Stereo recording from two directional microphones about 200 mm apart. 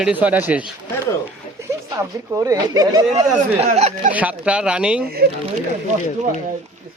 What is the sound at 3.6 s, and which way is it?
Speech, 30° right (ahead or behind).